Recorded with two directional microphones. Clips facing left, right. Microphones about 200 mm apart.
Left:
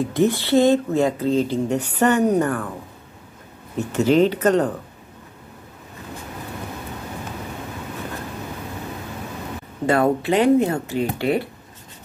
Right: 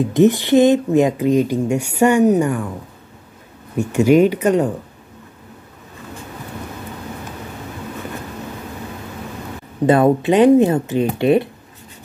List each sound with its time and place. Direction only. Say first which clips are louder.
0.0 s speech: right 6 dB; 20° right (ahead or behind)
3.7 s speech: right 4 dB; 15° right (ahead or behind)
9.8 s speech: right 5 dB; 20° right (ahead or behind)